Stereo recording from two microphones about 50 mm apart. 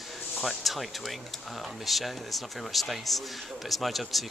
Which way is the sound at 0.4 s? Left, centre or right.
Centre.